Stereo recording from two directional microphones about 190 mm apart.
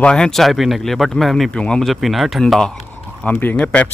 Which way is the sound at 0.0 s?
5° left (ahead or behind).